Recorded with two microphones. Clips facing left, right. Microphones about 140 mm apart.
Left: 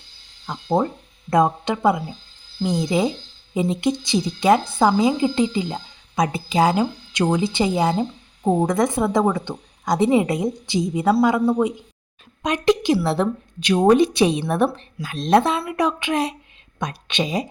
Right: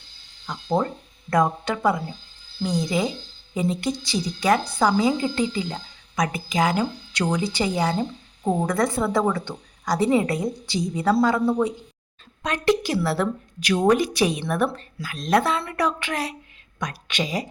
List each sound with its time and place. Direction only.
0.4 s a woman's voice: 25° left (ahead or behind)